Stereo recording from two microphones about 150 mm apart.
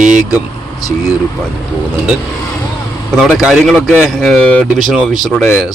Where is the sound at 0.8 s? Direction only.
25° left (ahead or behind).